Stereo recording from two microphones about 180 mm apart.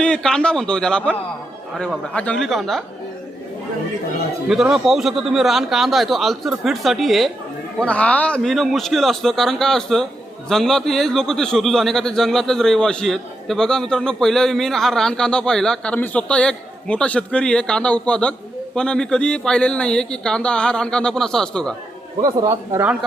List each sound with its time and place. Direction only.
0.0 s a man's voice: 5° left (ahead or behind)
4.4 s a man's voice: 5° right (ahead or behind)
22.2 s speech: 20° right (ahead or behind)